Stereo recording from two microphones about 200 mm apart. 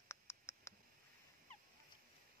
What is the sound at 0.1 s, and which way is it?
Mouse, 15° left (ahead or behind).